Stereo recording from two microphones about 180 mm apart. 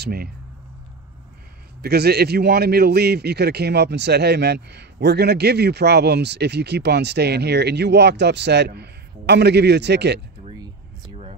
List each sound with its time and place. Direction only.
0.0 s speech: 60° right (ahead or behind)
1.8 s a man's voice: 65° right (ahead or behind)
10.6 s a sound: 30° right (ahead or behind)